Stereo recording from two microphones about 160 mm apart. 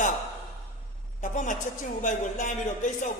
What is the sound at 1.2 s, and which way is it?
Speech, 50° left (ahead or behind).